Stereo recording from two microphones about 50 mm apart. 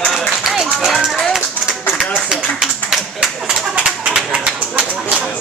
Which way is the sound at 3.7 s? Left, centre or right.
Right.